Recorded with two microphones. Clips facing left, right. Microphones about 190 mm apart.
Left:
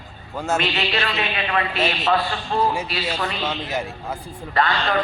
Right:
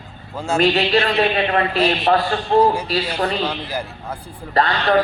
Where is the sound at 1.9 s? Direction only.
60° right (ahead or behind).